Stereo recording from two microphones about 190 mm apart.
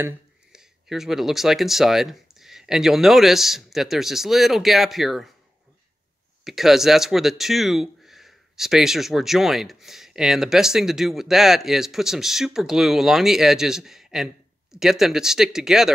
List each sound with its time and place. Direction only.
0.0 s speech: 5° right (ahead or behind)
6.4 s speech: centre (ahead or behind)